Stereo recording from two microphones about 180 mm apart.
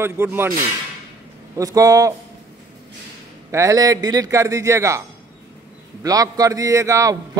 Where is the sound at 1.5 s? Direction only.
20° right (ahead or behind).